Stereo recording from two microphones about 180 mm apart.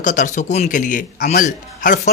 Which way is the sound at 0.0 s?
45° left (ahead or behind).